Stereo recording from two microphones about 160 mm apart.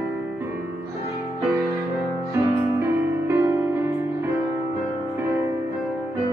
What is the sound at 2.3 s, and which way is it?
Music, 15° right (ahead or behind).